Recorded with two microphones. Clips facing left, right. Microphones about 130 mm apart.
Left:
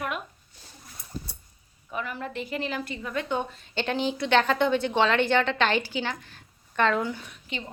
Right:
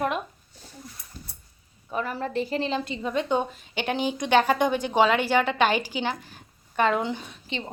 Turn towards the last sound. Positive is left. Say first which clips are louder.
# right 4 dB
turn(degrees=-25)  # may be behind; listen again after turning